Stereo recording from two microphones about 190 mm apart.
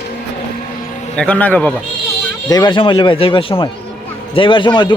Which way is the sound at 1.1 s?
5° left (ahead or behind).